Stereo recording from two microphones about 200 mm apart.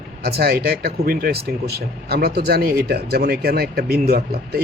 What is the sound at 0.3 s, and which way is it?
Speech, 50° right (ahead or behind).